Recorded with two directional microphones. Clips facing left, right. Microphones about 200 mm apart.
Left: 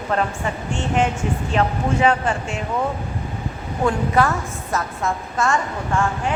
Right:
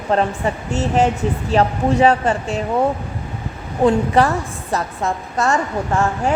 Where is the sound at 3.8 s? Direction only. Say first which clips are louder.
Right 4 dB; 30° right (ahead or behind).